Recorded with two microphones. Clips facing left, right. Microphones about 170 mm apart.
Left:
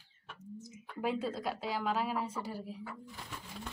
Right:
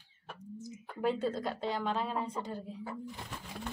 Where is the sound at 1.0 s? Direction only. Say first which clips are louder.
Right 3 dB; 5° left (ahead or behind).